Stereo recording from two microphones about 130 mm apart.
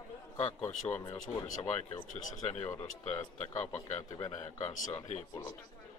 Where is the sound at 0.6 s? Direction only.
55° left (ahead or behind).